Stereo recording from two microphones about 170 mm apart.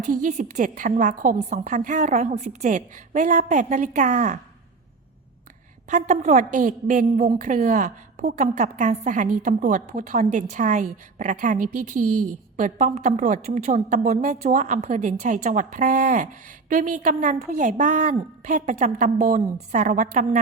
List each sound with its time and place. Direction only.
0.0 s a woman's voice: 45° right (ahead or behind)
5.9 s a woman's voice: 45° right (ahead or behind)